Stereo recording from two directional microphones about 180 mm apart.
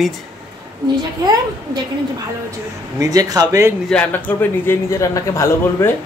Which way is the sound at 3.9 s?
10° left (ahead or behind).